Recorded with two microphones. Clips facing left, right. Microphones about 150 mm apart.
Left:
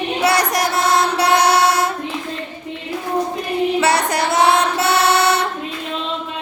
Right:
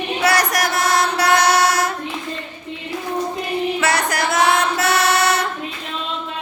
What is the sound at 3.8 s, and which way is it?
Chant, 30° left (ahead or behind).